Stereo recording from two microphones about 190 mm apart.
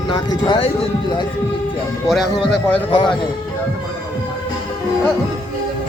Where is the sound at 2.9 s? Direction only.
25° left (ahead or behind).